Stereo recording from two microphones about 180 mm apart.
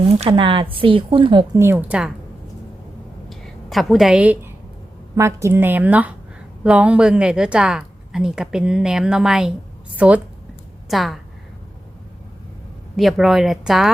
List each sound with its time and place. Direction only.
0.2 s speech: 30° right (ahead or behind)
1.5 s a woman's voice: 10° right (ahead or behind)
3.2 s a sound: centre (ahead or behind)
5.1 s a woman's voice: 15° right (ahead or behind); by 11.2 s centre (ahead or behind)
13.0 s a woman's voice: centre (ahead or behind)